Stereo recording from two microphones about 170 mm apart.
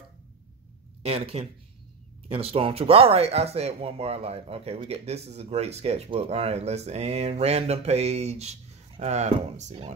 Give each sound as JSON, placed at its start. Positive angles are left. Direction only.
{"t": 1.0, "sound": "speech", "side_deg": -35}